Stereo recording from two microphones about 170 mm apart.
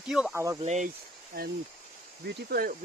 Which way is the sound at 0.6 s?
45° right (ahead or behind).